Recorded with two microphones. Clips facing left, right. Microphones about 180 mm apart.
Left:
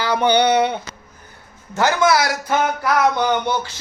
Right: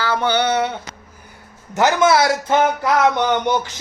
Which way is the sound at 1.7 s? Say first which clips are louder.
Right 2 dB; 20° right (ahead or behind).